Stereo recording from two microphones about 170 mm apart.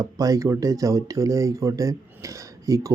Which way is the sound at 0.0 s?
20° right (ahead or behind).